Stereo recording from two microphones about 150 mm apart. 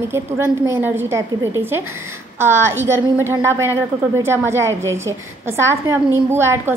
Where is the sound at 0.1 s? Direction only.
15° right (ahead or behind).